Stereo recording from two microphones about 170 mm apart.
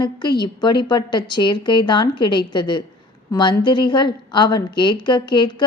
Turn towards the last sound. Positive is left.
turn(degrees=25)  # may be behind; listen again after turning